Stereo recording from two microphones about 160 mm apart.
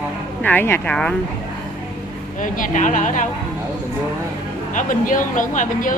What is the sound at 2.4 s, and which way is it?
Speech, 55° left (ahead or behind).